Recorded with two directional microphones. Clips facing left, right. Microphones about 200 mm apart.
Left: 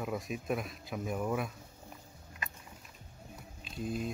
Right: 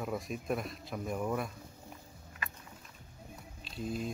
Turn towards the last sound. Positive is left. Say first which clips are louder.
# left 1 dB
turn(degrees=5)  # may be behind; listen again after turning